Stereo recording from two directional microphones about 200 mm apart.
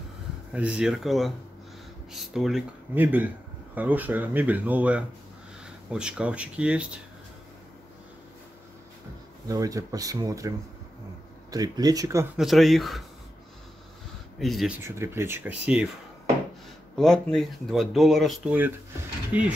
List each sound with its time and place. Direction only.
0.5 s speech: 5° right (ahead or behind)
9.5 s speech: 15° right (ahead or behind)
11.5 s speech: 20° right (ahead or behind)
12.4 s speech: centre (ahead or behind)
14.4 s speech: centre (ahead or behind)
14.8 s speech: 15° right (ahead or behind)
16.9 s speech: centre (ahead or behind)